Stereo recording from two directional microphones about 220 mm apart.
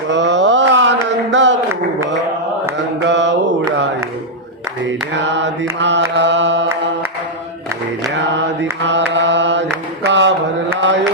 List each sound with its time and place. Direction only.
0.1 s a sound: 55° right (ahead or behind)
2.7 s mantra: 55° right (ahead or behind)
4.8 s mantra: 55° right (ahead or behind)
8.1 s mantra: 55° right (ahead or behind)